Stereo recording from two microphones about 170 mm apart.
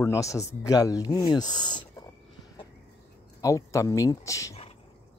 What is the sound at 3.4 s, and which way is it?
Speech, 20° left (ahead or behind).